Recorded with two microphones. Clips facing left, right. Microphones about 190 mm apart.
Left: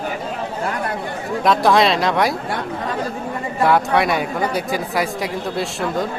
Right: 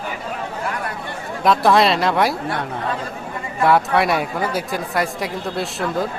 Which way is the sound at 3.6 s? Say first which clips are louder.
Right 1 dB; centre (ahead or behind).